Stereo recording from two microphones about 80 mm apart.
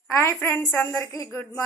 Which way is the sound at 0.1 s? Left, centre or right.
Left.